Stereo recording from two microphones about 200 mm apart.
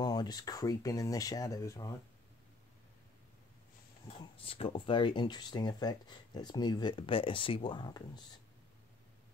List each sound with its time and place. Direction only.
0.0 s speech: 20° left (ahead or behind)
4.4 s speech: 25° left (ahead or behind)